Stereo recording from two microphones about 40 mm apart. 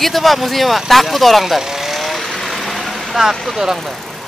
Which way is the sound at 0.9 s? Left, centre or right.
Centre.